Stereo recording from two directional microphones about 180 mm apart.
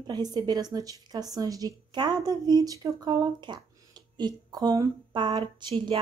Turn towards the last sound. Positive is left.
turn(degrees=-25)  # may be behind; listen again after turning